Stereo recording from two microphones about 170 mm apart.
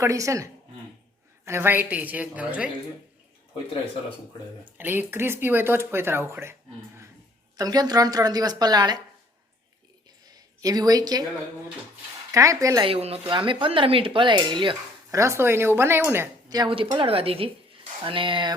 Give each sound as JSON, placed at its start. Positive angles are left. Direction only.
{"t": 0.0, "sound": "speech", "side_deg": -20}
{"t": 4.6, "sound": "speech", "side_deg": -10}
{"t": 10.2, "sound": "speech", "side_deg": -20}
{"t": 12.3, "sound": "speech", "side_deg": -20}
{"t": 12.8, "sound": "a woman's voice", "side_deg": -35}
{"t": 15.2, "sound": "a woman's voice", "side_deg": -15}